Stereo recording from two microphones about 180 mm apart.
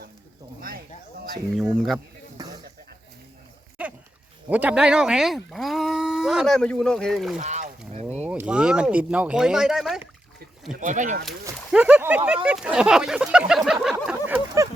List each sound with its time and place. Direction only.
0.7 s a sound: 55° right (ahead or behind)
1.5 s speech: centre (ahead or behind)
2.4 s snake: 20° right (ahead or behind)
3.8 s dog: 5° right (ahead or behind)
4.4 s speech: 10° right (ahead or behind)
7.3 s a sound: 40° right (ahead or behind)
8.2 s speech: 10° right (ahead or behind)
10.8 s speech: 45° right (ahead or behind)
11.7 s speech: 10° right (ahead or behind)
14.1 s a sound: 10° right (ahead or behind)